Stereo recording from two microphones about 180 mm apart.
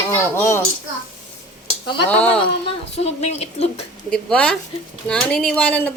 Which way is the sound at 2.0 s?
5° left (ahead or behind).